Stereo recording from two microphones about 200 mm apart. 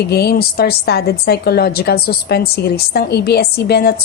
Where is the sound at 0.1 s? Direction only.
55° left (ahead or behind).